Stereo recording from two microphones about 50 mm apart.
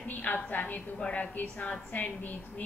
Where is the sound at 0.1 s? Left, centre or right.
Left.